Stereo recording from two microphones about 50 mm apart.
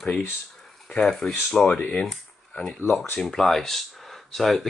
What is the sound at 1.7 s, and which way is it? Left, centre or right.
Speech, left.